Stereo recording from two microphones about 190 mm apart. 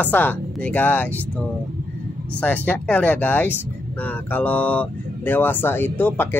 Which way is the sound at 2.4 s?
10° left (ahead or behind).